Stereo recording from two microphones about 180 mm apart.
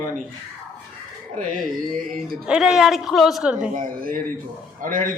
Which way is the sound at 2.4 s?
5° right (ahead or behind).